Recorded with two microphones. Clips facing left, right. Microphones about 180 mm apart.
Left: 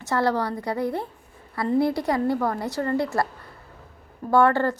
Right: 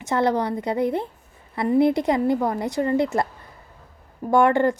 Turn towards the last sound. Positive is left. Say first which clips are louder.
# right 2 dB
turn(degrees=-15)  # may be behind; listen again after turning